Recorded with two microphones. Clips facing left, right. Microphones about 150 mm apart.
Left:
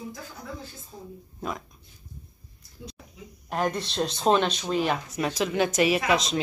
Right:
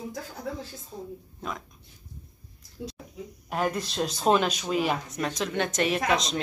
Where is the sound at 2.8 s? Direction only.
70° right (ahead or behind).